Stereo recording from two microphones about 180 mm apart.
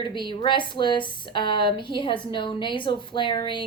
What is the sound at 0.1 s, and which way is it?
A woman's voice, 25° left (ahead or behind).